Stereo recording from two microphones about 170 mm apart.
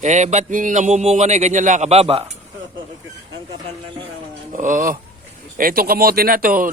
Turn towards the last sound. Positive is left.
turn(degrees=-55)  # may be behind; listen again after turning